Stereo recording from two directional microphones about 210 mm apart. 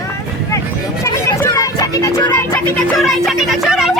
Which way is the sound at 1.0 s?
15° left (ahead or behind).